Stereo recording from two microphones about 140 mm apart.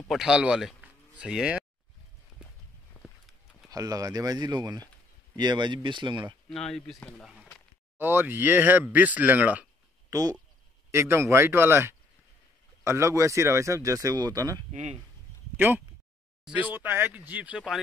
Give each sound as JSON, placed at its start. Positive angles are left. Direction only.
{"t": 0.1, "sound": "speech", "side_deg": -5}
{"t": 2.9, "sound": "a sound", "side_deg": 0}
{"t": 3.7, "sound": "speech", "side_deg": -25}
{"t": 6.5, "sound": "speech", "side_deg": 5}
{"t": 8.0, "sound": "speech", "side_deg": -15}
{"t": 10.0, "sound": "a sound", "side_deg": -25}
{"t": 10.9, "sound": "speech", "side_deg": -20}
{"t": 14.7, "sound": "speech", "side_deg": -55}
{"t": 15.5, "sound": "speech", "side_deg": -15}